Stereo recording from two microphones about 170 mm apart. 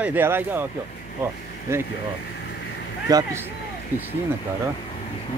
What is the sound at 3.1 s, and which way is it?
Speech, 20° right (ahead or behind).